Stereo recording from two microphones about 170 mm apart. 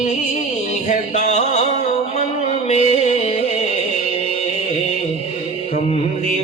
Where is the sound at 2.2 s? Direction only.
45° left (ahead or behind).